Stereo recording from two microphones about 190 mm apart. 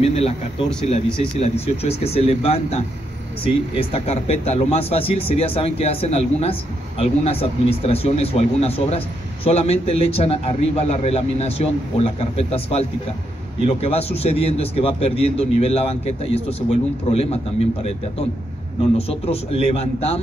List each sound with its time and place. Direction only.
0.0 s speech: 30° left (ahead or behind)
1.4 s speech: 35° left (ahead or behind)
18.9 s speech: 30° left (ahead or behind)